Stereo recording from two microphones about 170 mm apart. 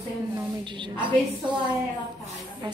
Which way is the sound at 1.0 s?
25° right (ahead or behind).